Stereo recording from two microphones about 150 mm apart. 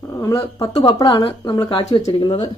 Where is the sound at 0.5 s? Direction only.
30° left (ahead or behind).